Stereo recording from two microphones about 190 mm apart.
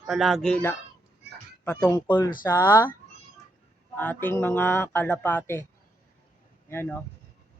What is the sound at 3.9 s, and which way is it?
Speech, 10° left (ahead or behind).